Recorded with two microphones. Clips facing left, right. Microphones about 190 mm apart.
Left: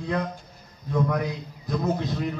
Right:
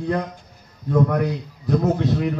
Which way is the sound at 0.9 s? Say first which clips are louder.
Right 6 dB; 55° right (ahead or behind).